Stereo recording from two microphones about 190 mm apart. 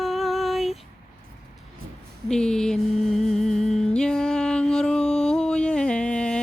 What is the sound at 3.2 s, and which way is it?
Music, centre (ahead or behind).